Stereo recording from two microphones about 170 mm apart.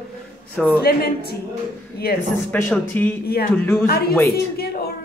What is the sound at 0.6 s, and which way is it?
Speech, 5° left (ahead or behind).